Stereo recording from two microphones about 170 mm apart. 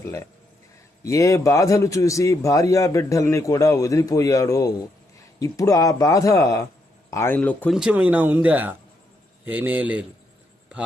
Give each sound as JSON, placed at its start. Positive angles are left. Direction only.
{"t": 0.0, "sound": "a man's voice", "side_deg": 15}
{"t": 7.8, "sound": "speech", "side_deg": -5}